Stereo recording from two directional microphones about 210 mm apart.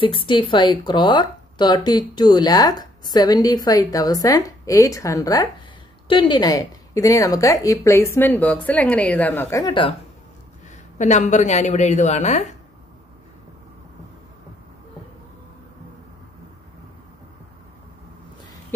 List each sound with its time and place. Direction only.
0.0 s speech: 25° left (ahead or behind)
11.0 s a woman's voice: 35° left (ahead or behind)